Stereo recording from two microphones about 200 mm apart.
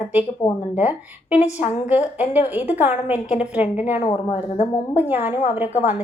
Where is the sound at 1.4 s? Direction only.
35° left (ahead or behind).